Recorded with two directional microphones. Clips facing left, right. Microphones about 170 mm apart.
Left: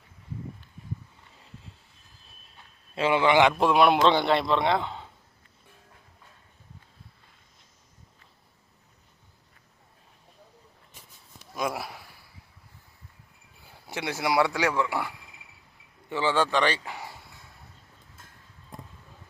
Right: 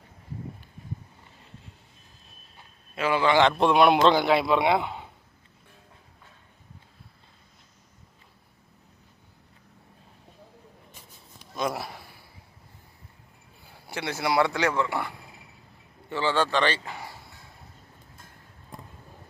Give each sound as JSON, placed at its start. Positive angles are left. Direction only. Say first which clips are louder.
{"t": 2.9, "sound": "a man's voice", "louder": "left 1 dB", "side_deg": 25}
{"t": 3.5, "sound": "a man's voice", "louder": "right 1 dB", "side_deg": 0}
{"t": 11.5, "sound": "a sound", "louder": "right 1 dB", "side_deg": 5}
{"t": 13.9, "sound": "speech", "louder": "even", "side_deg": 15}
{"t": 16.0, "sound": "speech", "louder": "even", "side_deg": 15}